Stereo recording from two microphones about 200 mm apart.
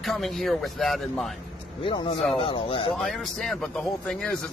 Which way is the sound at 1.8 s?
25° left (ahead or behind).